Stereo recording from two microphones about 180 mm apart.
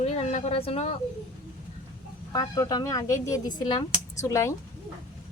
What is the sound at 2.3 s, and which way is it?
Speech, 20° left (ahead or behind).